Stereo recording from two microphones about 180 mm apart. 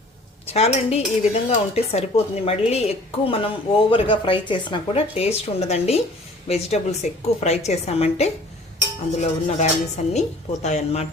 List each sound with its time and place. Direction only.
0.5 s speech: 35° left (ahead or behind)